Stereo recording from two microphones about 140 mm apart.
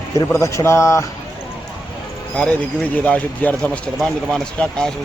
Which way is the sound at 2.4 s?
5° left (ahead or behind).